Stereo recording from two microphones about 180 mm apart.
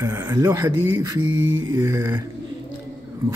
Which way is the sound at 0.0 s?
15° right (ahead or behind).